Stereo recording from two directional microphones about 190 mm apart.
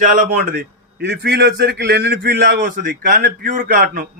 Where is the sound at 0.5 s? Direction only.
60° right (ahead or behind).